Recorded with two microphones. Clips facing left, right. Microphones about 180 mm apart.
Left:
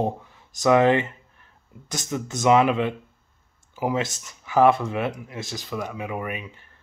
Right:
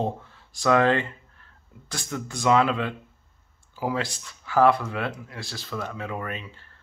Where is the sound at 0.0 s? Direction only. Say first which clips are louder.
Left 2 dB; 15° left (ahead or behind).